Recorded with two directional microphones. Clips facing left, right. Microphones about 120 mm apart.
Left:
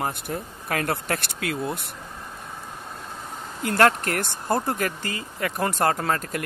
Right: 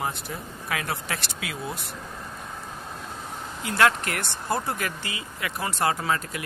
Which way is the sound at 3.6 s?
50° left (ahead or behind).